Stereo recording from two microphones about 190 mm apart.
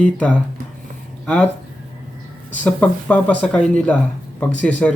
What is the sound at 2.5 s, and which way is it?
A man's voice, 10° left (ahead or behind).